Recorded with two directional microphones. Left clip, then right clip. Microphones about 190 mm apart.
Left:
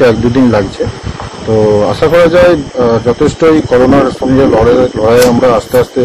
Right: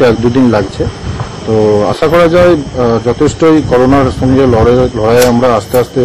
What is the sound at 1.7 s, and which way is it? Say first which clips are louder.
A man's voice: left 1 dB; 10° right (ahead or behind).